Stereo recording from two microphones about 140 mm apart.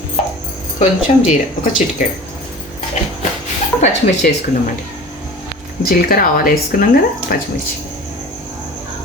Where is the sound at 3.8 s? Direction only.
60° left (ahead or behind).